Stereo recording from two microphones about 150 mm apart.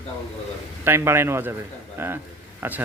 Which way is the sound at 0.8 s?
15° right (ahead or behind).